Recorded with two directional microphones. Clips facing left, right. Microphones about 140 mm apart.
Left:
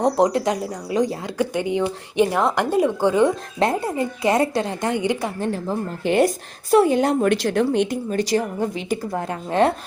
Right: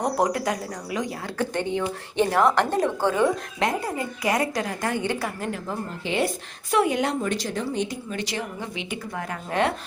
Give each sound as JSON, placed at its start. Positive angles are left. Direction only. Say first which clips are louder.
{"t": 0.0, "sound": "a woman's voice", "louder": "left 5 dB", "side_deg": 25}
{"t": 1.4, "sound": "a woman's voice", "louder": "left 4 dB", "side_deg": 10}
{"t": 3.6, "sound": "a woman's voice", "louder": "left 6 dB", "side_deg": 30}
{"t": 5.4, "sound": "a woman's voice", "louder": "left 6 dB", "side_deg": 30}
{"t": 6.1, "sound": "speech", "louder": "left 8 dB", "side_deg": 45}
{"t": 7.1, "sound": "speech", "louder": "left 8 dB", "side_deg": 60}
{"t": 8.1, "sound": "speech", "louder": "left 9 dB", "side_deg": 40}